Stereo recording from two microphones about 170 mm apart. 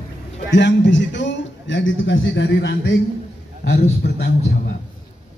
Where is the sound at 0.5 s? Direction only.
90° left.